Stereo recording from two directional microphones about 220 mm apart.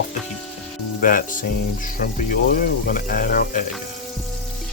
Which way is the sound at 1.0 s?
40° left (ahead or behind).